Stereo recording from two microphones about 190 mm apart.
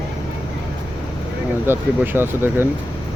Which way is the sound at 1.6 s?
10° right (ahead or behind).